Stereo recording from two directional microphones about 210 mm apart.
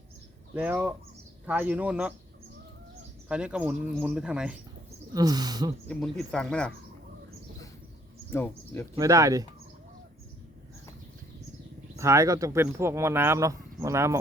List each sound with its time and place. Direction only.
0.5 s speech: 5° right (ahead or behind)
3.2 s speech: 5° right (ahead or behind)
5.1 s speech: 20° right (ahead or behind)
5.9 s speech: 5° left (ahead or behind)
8.3 s speech: 10° left (ahead or behind)
9.0 s speech: 15° right (ahead or behind)
11.9 s speech: 15° right (ahead or behind)